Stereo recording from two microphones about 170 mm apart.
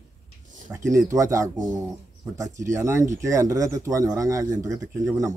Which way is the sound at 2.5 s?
15° right (ahead or behind).